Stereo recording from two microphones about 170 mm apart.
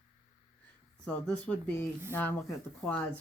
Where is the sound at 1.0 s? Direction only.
10° left (ahead or behind).